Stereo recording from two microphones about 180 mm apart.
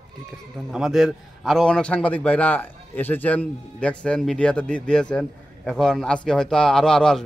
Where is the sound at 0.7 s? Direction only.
Centre (ahead or behind).